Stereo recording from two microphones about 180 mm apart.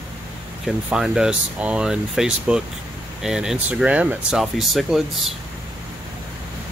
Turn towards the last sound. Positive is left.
turn(degrees=0)  # may be behind; listen again after turning